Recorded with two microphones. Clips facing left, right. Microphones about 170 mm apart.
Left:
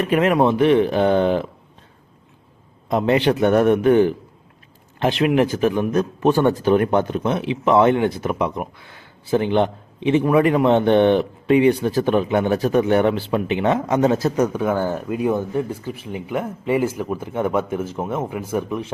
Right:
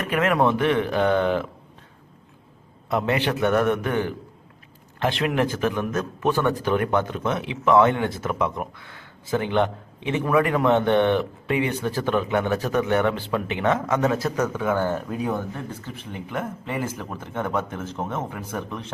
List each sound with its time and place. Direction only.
0.0 s a man's voice: 25° left (ahead or behind)
2.9 s a man's voice: 20° left (ahead or behind)